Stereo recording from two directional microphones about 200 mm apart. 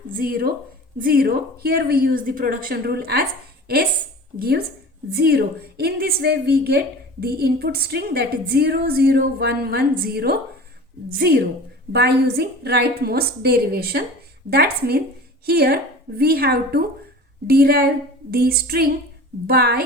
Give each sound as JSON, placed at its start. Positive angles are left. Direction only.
{"t": 0.1, "sound": "a woman's voice", "side_deg": -45}
{"t": 4.4, "sound": "a woman's voice", "side_deg": -50}